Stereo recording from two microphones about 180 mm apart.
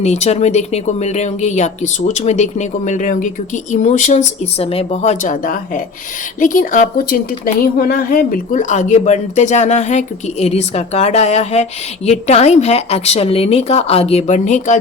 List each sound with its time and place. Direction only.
0.0 s a woman's voice: 40° left (ahead or behind)